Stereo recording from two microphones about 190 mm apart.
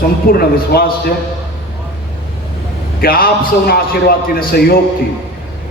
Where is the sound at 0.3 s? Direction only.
55° left (ahead or behind).